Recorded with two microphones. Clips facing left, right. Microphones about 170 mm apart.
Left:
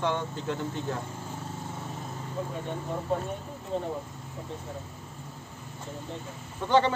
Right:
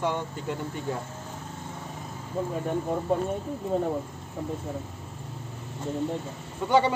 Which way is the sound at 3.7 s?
50° right (ahead or behind).